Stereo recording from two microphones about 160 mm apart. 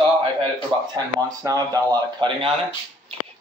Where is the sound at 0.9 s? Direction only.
20° right (ahead or behind).